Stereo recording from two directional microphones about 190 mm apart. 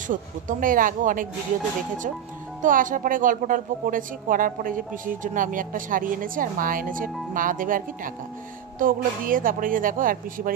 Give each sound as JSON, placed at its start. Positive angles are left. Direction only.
{"t": 0.1, "sound": "a woman's voice", "side_deg": -45}
{"t": 2.6, "sound": "a woman's voice", "side_deg": -45}